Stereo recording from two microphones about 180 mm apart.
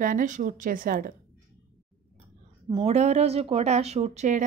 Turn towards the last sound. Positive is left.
turn(degrees=-40)  # may be behind; listen again after turning